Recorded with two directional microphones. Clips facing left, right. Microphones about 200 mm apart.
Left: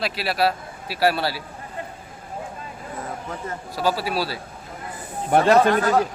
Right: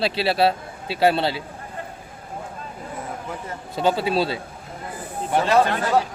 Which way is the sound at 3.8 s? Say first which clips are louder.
Right 3 dB; 25° right (ahead or behind).